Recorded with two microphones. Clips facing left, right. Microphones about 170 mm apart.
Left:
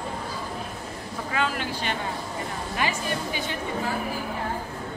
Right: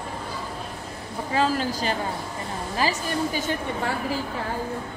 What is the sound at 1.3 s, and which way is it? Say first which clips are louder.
A woman's voice: right 5 dB; 35° right (ahead or behind).